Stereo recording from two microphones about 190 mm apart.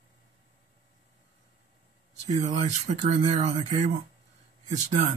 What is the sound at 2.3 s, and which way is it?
Speech, 35° right (ahead or behind).